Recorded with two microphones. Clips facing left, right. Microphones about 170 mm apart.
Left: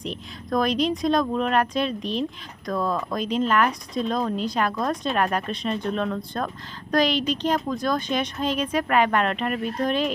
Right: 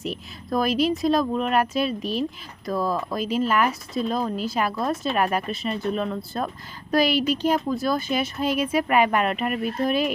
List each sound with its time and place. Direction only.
0.0 s speech: 5° right (ahead or behind)